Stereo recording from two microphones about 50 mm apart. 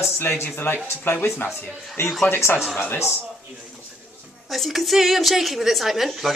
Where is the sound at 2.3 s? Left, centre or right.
Left.